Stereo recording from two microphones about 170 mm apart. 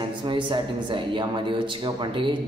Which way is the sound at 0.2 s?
30° right (ahead or behind).